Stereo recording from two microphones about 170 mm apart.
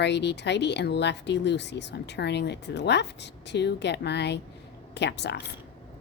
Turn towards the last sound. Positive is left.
turn(degrees=90)